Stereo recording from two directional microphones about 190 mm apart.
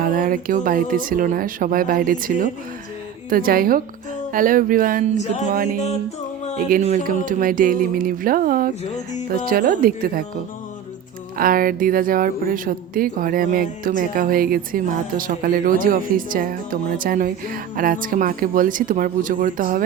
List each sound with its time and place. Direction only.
0.0 s speech: 45° right (ahead or behind)
5.1 s music: 40° left (ahead or behind)
6.8 s speech: 40° right (ahead or behind)
11.3 s speech: 50° right (ahead or behind)